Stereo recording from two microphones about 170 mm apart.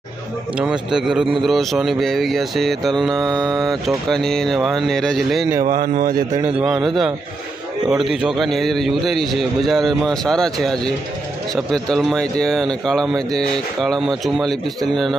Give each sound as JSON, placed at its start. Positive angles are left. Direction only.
{"t": 0.5, "sound": "a man's voice", "side_deg": -5}
{"t": 5.6, "sound": "a man's voice", "side_deg": -55}
{"t": 6.4, "sound": "a man's voice", "side_deg": -5}